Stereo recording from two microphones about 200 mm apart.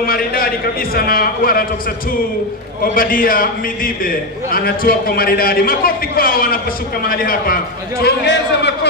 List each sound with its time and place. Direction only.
0.0 s a man's voice: 45° left (ahead or behind)
2.8 s a man's voice: 45° left (ahead or behind)